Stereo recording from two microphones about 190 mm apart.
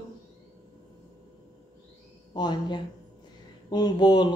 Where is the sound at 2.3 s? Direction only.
25° left (ahead or behind).